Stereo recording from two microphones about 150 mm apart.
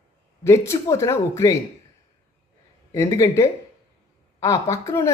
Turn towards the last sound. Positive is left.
turn(degrees=20)  # may be behind; listen again after turning